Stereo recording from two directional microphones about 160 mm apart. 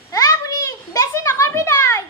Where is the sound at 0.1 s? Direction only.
20° left (ahead or behind).